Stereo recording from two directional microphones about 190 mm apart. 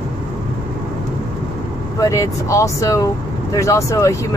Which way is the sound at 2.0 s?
15° left (ahead or behind).